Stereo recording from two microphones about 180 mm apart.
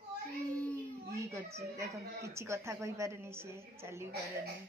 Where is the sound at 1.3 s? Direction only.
15° right (ahead or behind).